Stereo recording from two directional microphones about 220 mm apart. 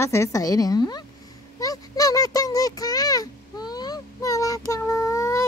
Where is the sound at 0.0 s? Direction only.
15° left (ahead or behind).